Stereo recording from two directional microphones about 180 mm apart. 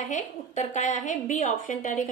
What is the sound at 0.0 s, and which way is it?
A woman's voice, 40° left (ahead or behind).